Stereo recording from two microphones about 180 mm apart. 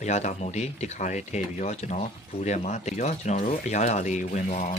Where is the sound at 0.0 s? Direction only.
40° left (ahead or behind).